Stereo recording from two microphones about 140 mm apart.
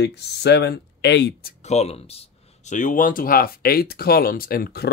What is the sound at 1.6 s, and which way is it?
Speech, 55° left (ahead or behind).